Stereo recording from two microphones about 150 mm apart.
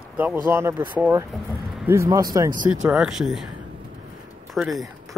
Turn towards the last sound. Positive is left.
turn(degrees=0)  # may be behind; listen again after turning